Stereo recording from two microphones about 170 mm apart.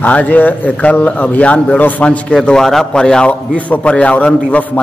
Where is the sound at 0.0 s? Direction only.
10° left (ahead or behind).